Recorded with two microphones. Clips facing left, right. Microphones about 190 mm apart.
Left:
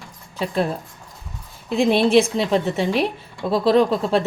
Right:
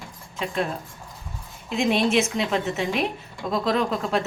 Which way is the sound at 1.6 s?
35° left (ahead or behind).